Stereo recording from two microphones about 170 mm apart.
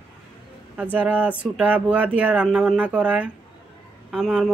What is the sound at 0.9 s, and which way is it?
Speech, 10° right (ahead or behind).